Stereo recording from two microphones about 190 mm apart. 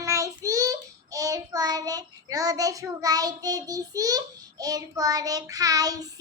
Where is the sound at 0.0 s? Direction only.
15° right (ahead or behind).